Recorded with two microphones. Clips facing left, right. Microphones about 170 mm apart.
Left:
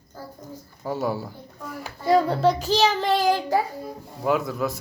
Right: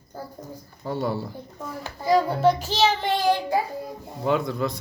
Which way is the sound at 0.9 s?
10° left (ahead or behind).